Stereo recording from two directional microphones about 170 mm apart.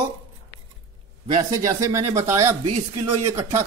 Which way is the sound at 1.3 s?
20° right (ahead or behind).